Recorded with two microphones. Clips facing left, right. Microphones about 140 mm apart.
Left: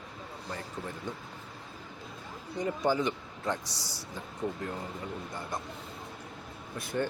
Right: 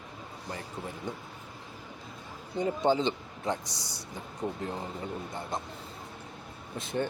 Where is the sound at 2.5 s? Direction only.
25° right (ahead or behind).